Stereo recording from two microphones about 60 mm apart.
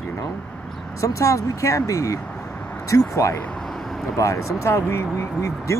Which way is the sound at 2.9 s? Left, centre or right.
Left.